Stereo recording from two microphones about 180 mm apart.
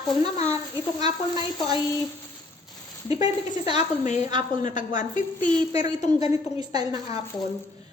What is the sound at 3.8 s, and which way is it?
Speech, 40° left (ahead or behind).